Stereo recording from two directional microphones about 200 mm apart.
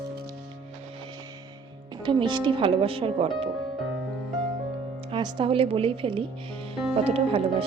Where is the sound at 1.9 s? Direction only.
25° right (ahead or behind).